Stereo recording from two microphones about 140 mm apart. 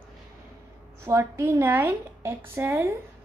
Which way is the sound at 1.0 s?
15° right (ahead or behind).